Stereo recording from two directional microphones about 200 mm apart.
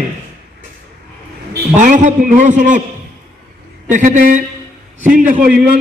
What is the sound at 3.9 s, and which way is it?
A man's voice, 40° right (ahead or behind).